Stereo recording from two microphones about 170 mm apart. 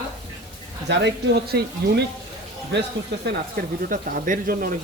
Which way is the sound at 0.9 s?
75° right (ahead or behind).